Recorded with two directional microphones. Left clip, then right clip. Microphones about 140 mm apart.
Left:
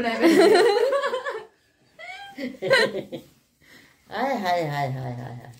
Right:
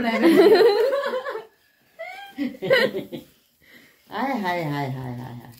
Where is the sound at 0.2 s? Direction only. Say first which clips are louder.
Right 2 dB; 15° left (ahead or behind).